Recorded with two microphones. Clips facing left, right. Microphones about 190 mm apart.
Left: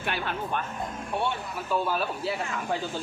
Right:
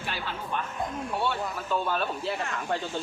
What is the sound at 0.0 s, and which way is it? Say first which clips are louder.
Speech: left 4 dB; 60° left (ahead or behind).